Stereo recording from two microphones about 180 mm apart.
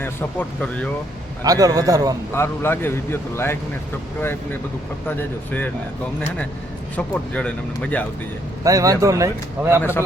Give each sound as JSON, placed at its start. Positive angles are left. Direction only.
{"t": 0.0, "sound": "speech", "side_deg": 10}
{"t": 1.5, "sound": "a man's voice", "side_deg": -20}
{"t": 2.3, "sound": "speech", "side_deg": 15}
{"t": 5.0, "sound": "speech", "side_deg": 10}
{"t": 6.9, "sound": "speech", "side_deg": 5}
{"t": 8.6, "sound": "speech", "side_deg": -20}